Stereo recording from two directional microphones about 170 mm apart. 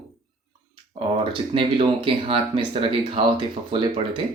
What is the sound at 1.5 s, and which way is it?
Speech, 30° right (ahead or behind).